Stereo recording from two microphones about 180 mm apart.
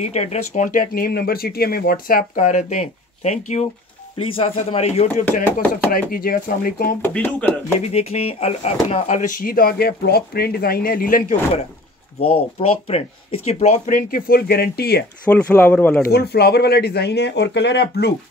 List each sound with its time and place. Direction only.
0.0 s speech: 35° left (ahead or behind)
5.9 s speech: 55° left (ahead or behind)
7.0 s speech: 10° left (ahead or behind)
7.8 s speech: 35° left (ahead or behind); by 11.3 s 50° left (ahead or behind)
12.2 s speech: 30° left (ahead or behind); by 15.0 s 60° left (ahead or behind)
15.2 s speech: 5° left (ahead or behind)
16.1 s speech: 65° left (ahead or behind)